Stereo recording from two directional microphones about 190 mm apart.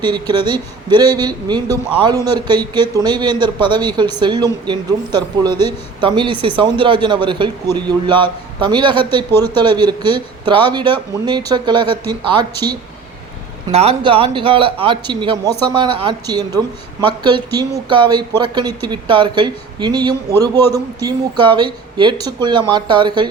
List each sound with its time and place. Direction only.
0.0 s speech: 25° right (ahead or behind)